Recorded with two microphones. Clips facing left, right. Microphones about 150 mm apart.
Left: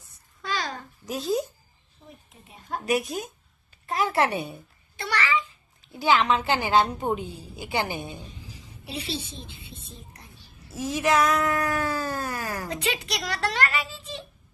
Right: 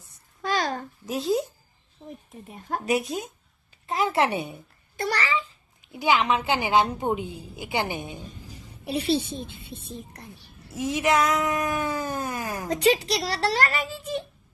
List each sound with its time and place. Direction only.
0.4 s a sound: 50° right (ahead or behind)
1.0 s speech: 25° right (ahead or behind)
2.5 s a woman's voice: 50° right (ahead or behind)
2.8 s speech: 30° right (ahead or behind)
4.9 s a child's voice: 40° right (ahead or behind)
5.9 s a woman's voice: 15° right (ahead or behind)
8.8 s a woman's voice: 50° right (ahead or behind)
9.6 s whispering: 55° right (ahead or behind)
10.7 s speech: 20° right (ahead or behind)
12.6 s a child's voice: 40° right (ahead or behind)